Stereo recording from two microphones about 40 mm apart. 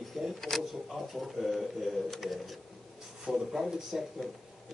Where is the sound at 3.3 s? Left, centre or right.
Centre.